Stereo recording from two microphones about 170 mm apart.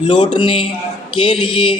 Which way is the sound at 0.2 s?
30° left (ahead or behind).